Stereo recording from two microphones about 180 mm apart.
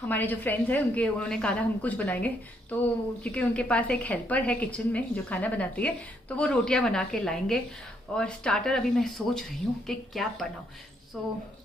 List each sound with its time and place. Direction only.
0.1 s a woman's voice: 10° left (ahead or behind)